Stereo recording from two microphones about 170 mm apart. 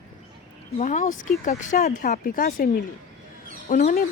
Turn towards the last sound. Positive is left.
turn(degrees=60)  # may be behind; listen again after turning